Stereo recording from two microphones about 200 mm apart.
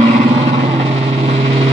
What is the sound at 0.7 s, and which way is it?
Vehicle, 30° right (ahead or behind).